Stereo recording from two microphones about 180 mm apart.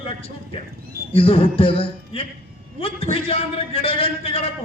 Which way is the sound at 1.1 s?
30° left (ahead or behind).